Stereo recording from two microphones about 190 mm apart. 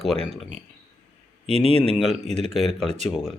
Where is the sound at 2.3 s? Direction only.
35° right (ahead or behind).